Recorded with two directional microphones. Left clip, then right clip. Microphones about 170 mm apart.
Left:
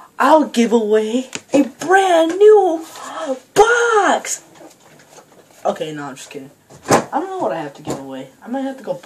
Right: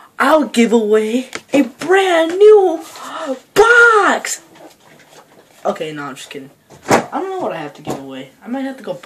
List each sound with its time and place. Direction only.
0.1 s speech: 15° right (ahead or behind)
1.5 s speech: 5° right (ahead or behind)
5.6 s speech: 5° right (ahead or behind)